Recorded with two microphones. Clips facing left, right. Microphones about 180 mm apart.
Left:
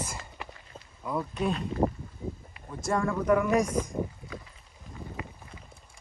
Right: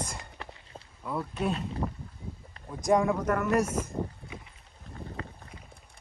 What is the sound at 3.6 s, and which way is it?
Speech, 5° right (ahead or behind).